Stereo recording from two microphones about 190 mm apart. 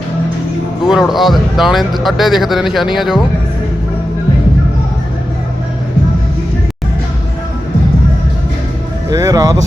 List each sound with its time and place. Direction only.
0.9 s speech: centre (ahead or behind)
9.0 s speech: 20° right (ahead or behind)